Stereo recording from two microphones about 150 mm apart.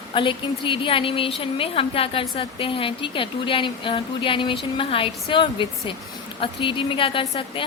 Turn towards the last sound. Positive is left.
turn(degrees=35)  # may be behind; listen again after turning